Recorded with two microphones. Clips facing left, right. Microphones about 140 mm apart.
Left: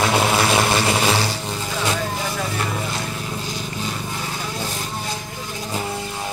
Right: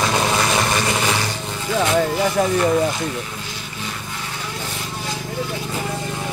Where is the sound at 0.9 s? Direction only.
10° left (ahead or behind).